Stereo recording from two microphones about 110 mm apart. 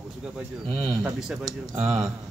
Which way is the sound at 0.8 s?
5° right (ahead or behind).